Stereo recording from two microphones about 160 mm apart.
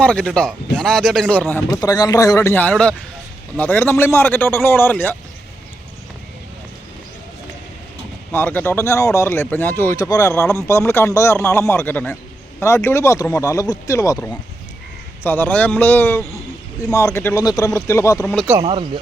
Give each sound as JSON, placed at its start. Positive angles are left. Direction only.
{"t": 0.0, "sound": "speech", "side_deg": 5}
{"t": 1.7, "sound": "speech", "side_deg": 25}
{"t": 8.3, "sound": "speech", "side_deg": 10}
{"t": 18.6, "sound": "speech", "side_deg": -35}